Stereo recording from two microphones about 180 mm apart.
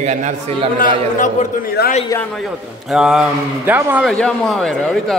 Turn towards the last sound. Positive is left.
turn(degrees=0)  # may be behind; listen again after turning